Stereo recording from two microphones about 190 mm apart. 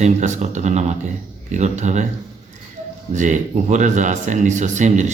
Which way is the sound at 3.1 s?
40° right (ahead or behind).